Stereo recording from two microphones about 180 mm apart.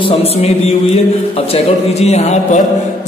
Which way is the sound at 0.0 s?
35° left (ahead or behind).